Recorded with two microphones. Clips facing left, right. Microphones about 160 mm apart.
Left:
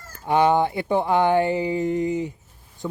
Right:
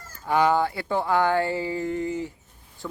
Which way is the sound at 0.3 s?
20° left (ahead or behind).